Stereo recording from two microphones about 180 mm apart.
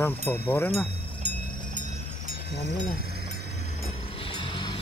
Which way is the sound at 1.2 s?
40° right (ahead or behind).